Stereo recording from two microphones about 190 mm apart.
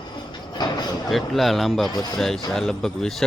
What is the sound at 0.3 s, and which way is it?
Train, 20° left (ahead or behind).